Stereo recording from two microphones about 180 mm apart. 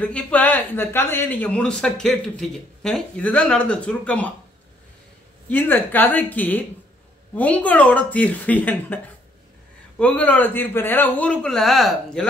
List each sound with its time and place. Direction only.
0.0 s speech: 5° left (ahead or behind)
5.5 s speech: 10° left (ahead or behind)